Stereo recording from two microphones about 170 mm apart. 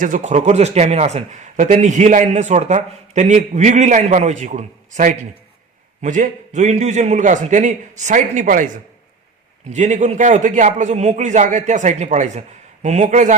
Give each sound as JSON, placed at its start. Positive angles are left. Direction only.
{"t": 0.0, "sound": "a man's voice", "side_deg": -50}
{"t": 9.7, "sound": "a man's voice", "side_deg": -45}